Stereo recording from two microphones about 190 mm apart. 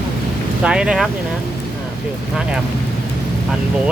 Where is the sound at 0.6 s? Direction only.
5° right (ahead or behind).